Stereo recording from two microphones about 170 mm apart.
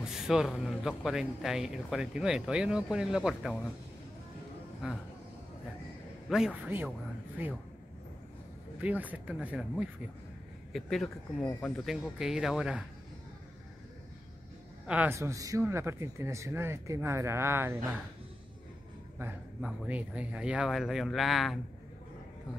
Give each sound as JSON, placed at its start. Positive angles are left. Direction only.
{"t": 0.0, "sound": "a man's voice", "side_deg": -5}
{"t": 4.8, "sound": "a man's voice", "side_deg": -5}
{"t": 6.2, "sound": "a man's voice", "side_deg": -5}
{"t": 8.8, "sound": "a man's voice", "side_deg": -10}
{"t": 14.9, "sound": "speech", "side_deg": -10}
{"t": 19.1, "sound": "a man's voice", "side_deg": -10}